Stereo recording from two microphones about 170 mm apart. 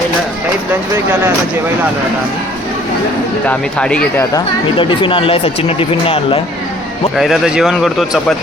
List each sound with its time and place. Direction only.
3.4 s speech: 5° left (ahead or behind)
4.8 s speech: 30° left (ahead or behind)
7.2 s speech: 5° right (ahead or behind)